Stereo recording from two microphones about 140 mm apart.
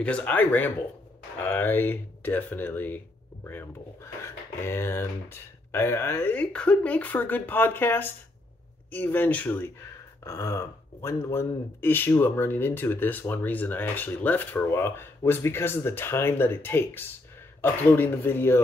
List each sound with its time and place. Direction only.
0.0 s speech: 10° left (ahead or behind)